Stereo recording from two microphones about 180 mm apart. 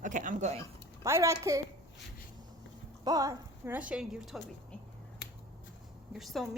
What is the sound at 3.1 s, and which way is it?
Speech, 20° right (ahead or behind).